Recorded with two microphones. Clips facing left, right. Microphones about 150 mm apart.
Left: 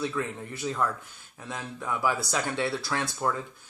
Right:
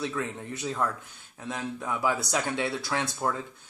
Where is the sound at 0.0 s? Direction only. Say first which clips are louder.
Left 1 dB; 20° right (ahead or behind).